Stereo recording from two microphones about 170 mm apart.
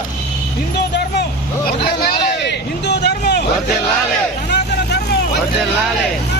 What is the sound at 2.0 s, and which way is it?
Speech, 65° left (ahead or behind).